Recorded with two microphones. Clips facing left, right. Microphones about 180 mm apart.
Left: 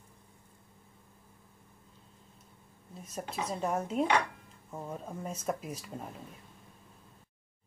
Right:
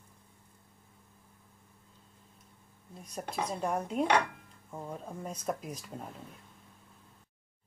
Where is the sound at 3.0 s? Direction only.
5° left (ahead or behind).